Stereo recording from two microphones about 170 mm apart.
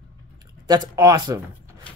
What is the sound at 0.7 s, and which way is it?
Speech, 20° right (ahead or behind).